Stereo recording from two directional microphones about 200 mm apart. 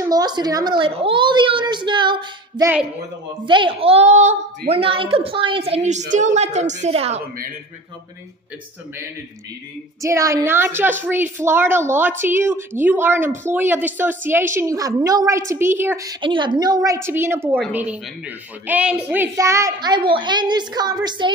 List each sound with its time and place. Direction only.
0.1 s a woman's voice: 20° right (ahead or behind)
10.0 s a woman's voice: 15° right (ahead or behind)
18.7 s a woman's voice: 5° right (ahead or behind)